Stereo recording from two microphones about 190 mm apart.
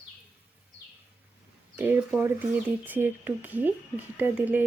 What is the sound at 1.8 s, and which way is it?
Speech, 10° right (ahead or behind).